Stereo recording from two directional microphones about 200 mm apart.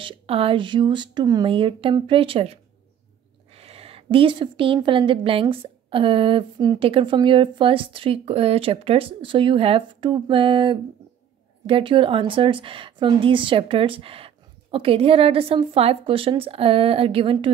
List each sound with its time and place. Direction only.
0.0 s a woman's voice: 25° right (ahead or behind)